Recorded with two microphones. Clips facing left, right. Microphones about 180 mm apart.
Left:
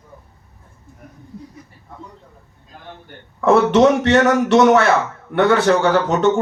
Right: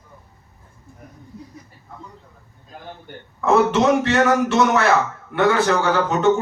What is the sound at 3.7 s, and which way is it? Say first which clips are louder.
Speech: left 4 dB; 65° left (ahead or behind).